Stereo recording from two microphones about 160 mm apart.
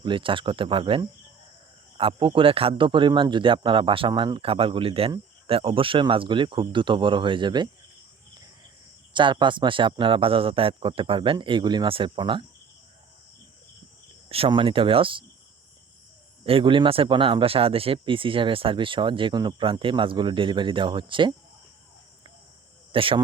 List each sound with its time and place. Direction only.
0.0 s a man's voice: 30° right (ahead or behind)
9.1 s a man's voice: 30° right (ahead or behind)
14.3 s a man's voice: 35° right (ahead or behind)
16.4 s a man's voice: 35° right (ahead or behind)
22.9 s speech: 35° right (ahead or behind)